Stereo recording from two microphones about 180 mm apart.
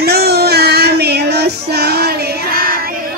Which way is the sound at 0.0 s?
60° right (ahead or behind).